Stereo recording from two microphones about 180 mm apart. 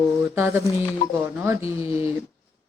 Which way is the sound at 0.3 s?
15° right (ahead or behind).